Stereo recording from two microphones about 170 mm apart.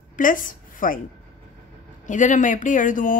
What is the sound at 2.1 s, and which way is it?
Speech, 45° left (ahead or behind).